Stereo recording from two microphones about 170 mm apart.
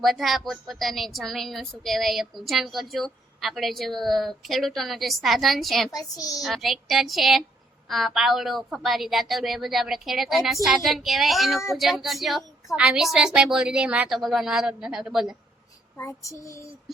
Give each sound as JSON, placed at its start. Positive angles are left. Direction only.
{"t": 0.0, "sound": "a woman's voice", "side_deg": 0}
{"t": 5.9, "sound": "child singing", "side_deg": 20}
{"t": 6.4, "sound": "a woman's voice", "side_deg": 0}
{"t": 16.0, "sound": "child singing", "side_deg": 15}